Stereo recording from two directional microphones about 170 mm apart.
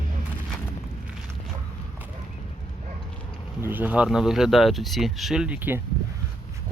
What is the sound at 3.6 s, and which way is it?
Speech, 10° right (ahead or behind).